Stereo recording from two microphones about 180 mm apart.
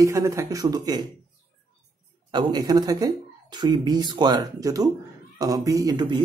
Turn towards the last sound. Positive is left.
turn(degrees=-25)  # may be behind; listen again after turning